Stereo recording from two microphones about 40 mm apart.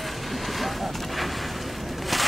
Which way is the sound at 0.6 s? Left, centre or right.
Centre.